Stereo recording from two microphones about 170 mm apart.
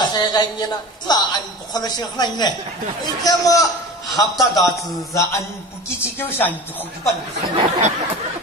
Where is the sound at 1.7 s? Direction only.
25° left (ahead or behind).